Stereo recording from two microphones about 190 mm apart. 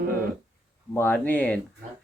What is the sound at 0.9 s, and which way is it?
Speech, 10° left (ahead or behind).